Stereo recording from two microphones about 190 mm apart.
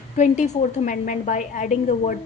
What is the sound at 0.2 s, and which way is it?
Speech, 40° left (ahead or behind).